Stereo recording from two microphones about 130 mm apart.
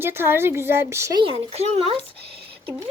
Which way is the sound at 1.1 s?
45° right (ahead or behind).